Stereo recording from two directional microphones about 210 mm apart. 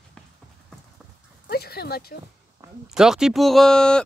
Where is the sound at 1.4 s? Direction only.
50° left (ahead or behind).